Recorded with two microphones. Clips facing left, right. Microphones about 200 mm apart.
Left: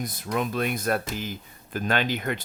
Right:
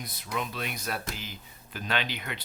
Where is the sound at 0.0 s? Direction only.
50° left (ahead or behind).